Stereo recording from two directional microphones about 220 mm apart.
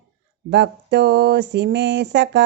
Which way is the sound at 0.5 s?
50° right (ahead or behind).